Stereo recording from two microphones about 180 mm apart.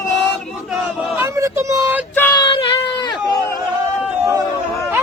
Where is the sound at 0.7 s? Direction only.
10° right (ahead or behind).